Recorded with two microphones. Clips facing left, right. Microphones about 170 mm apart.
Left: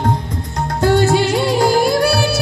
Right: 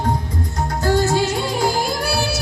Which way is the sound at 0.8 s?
65° left (ahead or behind).